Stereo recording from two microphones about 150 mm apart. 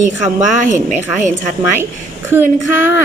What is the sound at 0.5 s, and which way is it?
Speech, 60° right (ahead or behind).